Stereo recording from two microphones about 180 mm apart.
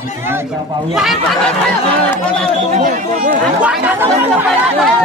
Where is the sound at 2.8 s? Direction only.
45° right (ahead or behind).